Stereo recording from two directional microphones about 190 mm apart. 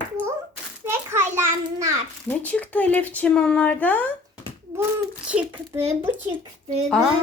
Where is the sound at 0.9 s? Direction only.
10° right (ahead or behind).